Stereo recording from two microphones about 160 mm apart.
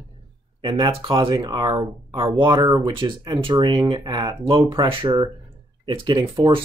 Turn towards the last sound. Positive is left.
turn(degrees=-30)  # may be behind; listen again after turning